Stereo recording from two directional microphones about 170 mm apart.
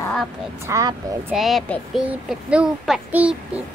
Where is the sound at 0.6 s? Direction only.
20° right (ahead or behind).